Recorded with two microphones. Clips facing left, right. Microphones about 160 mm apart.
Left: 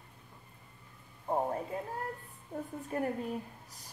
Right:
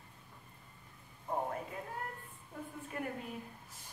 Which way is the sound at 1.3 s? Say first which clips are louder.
Left 5 dB; 35° left (ahead or behind).